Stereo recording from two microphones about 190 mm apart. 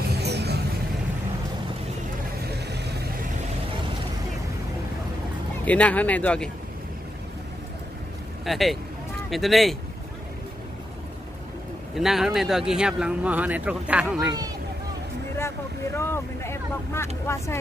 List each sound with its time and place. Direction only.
0.1 s vehicle: 60° right (ahead or behind)
2.4 s vehicle: 60° right (ahead or behind)
5.7 s speech: 5° left (ahead or behind)
8.5 s speech: centre (ahead or behind)
11.9 s speech: centre (ahead or behind)
15.3 s speech: 15° left (ahead or behind)